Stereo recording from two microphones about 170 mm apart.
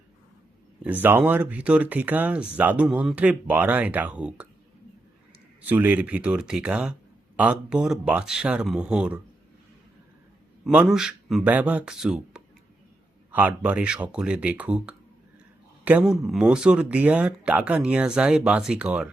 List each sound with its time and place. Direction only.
0.8 s speech: 10° right (ahead or behind)
5.6 s speech: 10° right (ahead or behind)
10.7 s speech: 5° right (ahead or behind)